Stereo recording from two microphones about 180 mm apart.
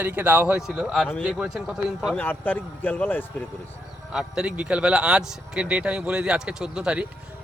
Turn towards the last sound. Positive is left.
turn(degrees=-5)  # may be behind; listen again after turning